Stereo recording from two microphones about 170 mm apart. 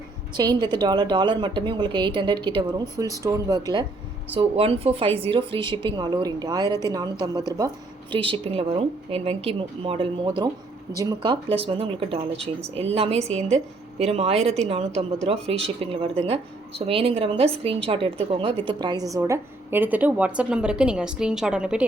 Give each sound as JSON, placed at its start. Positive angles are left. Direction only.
{"t": 0.3, "sound": "a woman's voice", "side_deg": -25}
{"t": 4.4, "sound": "a woman's voice", "side_deg": -35}
{"t": 8.3, "sound": "a woman's voice", "side_deg": -35}